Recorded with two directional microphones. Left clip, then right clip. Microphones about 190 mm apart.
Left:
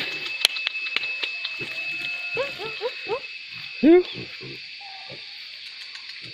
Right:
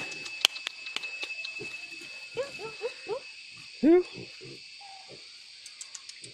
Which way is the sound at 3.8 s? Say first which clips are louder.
Left 6 dB; 5° right (ahead or behind).